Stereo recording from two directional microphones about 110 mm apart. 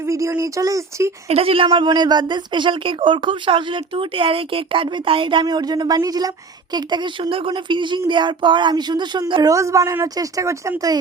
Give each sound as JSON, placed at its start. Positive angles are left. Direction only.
{"t": 0.0, "sound": "speech", "side_deg": -30}
{"t": 1.3, "sound": "a woman's voice", "side_deg": -55}